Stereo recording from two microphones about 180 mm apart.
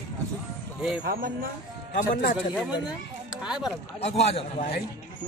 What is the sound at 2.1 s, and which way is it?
Speech, 45° left (ahead or behind).